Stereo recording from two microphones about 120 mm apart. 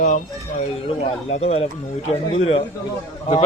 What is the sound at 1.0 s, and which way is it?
Speech, 60° left (ahead or behind).